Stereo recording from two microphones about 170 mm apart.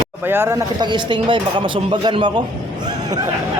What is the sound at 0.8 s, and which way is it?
A man's voice, 25° right (ahead or behind).